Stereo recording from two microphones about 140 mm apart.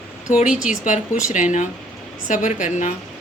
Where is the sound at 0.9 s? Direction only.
60° left (ahead or behind).